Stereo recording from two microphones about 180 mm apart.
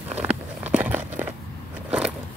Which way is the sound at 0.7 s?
10° right (ahead or behind).